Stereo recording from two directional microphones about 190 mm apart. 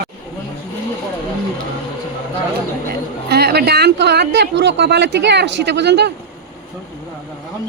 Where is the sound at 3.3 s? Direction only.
55° right (ahead or behind).